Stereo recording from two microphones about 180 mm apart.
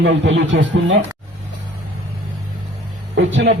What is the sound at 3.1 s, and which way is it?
Speech, 60° right (ahead or behind).